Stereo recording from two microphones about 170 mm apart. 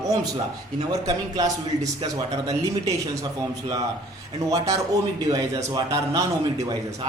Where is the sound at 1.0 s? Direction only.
20° right (ahead or behind).